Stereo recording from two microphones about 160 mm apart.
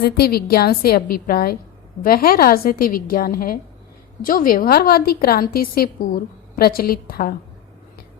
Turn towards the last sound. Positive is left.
turn(degrees=70)  # may be behind; listen again after turning